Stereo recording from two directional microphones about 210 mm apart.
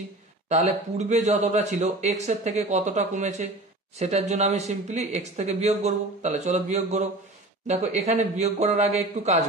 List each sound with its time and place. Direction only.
0.5 s speech: 30° right (ahead or behind)